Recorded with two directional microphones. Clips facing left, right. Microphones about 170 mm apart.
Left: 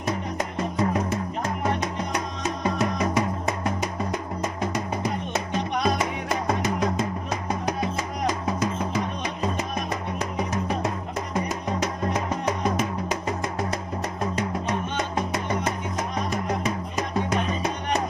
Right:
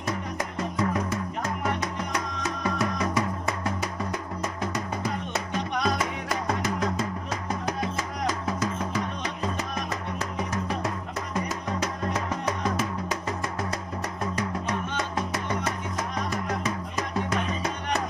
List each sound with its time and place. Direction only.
0.0 s music: 20° left (ahead or behind)
8.3 s music: 20° left (ahead or behind)